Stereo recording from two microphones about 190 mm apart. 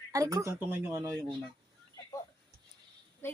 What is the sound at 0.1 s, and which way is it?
Speech, 15° right (ahead or behind).